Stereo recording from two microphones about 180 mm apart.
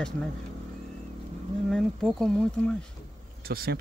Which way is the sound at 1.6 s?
Centre (ahead or behind).